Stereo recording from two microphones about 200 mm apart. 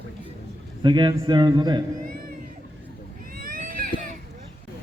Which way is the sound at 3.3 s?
45° right (ahead or behind).